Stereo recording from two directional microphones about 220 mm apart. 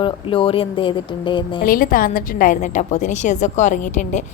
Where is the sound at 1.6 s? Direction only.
40° left (ahead or behind).